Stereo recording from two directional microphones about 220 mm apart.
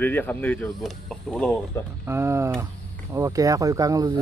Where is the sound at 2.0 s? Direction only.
10° right (ahead or behind).